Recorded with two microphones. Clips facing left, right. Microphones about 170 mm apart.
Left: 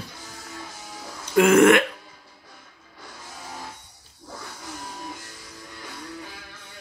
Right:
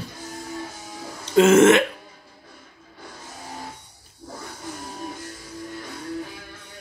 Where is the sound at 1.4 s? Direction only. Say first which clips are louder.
Right 2 dB; 25° right (ahead or behind).